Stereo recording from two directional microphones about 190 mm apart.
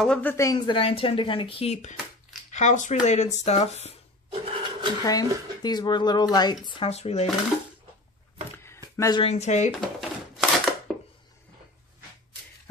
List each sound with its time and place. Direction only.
0.0 s speech: 5° left (ahead or behind); by 4.0 s 35° left (ahead or behind)
4.3 s filing: 30° right (ahead or behind)
5.0 s speech: 20° left (ahead or behind)
8.9 s speech: 15° left (ahead or behind)
9.2 s speech: 35° left (ahead or behind)
9.7 s a sound: centre (ahead or behind)